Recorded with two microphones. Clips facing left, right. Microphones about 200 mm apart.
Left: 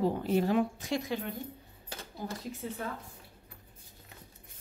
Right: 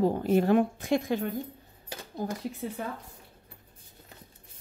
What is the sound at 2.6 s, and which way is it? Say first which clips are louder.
Speech: right 2 dB; 65° right (ahead or behind).